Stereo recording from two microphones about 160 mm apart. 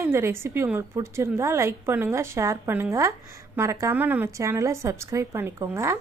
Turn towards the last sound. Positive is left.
turn(degrees=-15)  # may be behind; listen again after turning